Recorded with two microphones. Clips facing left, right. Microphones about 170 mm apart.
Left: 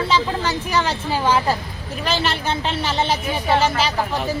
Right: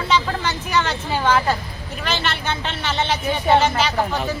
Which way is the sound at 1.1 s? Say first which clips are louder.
Even; 5° left (ahead or behind).